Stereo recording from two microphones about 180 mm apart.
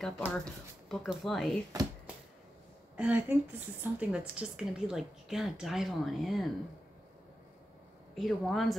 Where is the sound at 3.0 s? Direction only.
10° right (ahead or behind).